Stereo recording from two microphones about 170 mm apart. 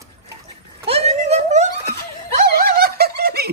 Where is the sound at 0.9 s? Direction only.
40° right (ahead or behind).